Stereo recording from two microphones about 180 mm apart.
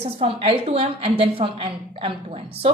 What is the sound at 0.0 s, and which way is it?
A woman's voice, 35° right (ahead or behind).